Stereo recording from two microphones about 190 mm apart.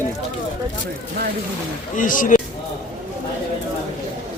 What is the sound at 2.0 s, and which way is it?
Speech, 45° left (ahead or behind).